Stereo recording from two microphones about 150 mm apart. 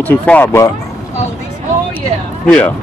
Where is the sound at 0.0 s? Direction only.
10° left (ahead or behind).